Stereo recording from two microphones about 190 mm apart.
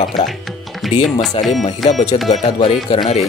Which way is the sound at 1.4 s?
30° left (ahead or behind).